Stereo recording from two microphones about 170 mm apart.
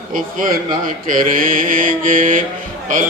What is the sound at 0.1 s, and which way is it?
A man's voice, 55° right (ahead or behind).